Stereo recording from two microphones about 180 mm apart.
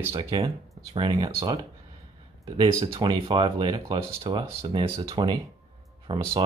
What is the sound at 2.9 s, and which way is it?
Speech, 25° right (ahead or behind).